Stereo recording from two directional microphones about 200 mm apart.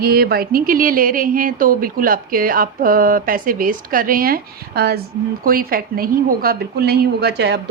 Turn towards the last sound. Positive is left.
turn(degrees=-60)  # may be behind; listen again after turning